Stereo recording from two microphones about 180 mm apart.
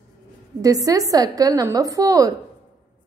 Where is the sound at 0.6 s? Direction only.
20° right (ahead or behind).